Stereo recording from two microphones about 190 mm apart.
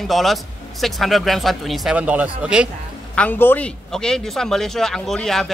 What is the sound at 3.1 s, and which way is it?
Speech, 10° left (ahead or behind).